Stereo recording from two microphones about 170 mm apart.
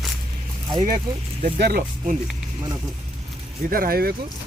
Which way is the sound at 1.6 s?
60° right (ahead or behind).